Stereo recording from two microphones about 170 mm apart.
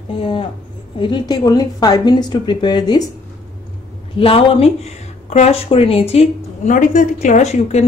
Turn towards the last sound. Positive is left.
turn(degrees=40)  # may be behind; listen again after turning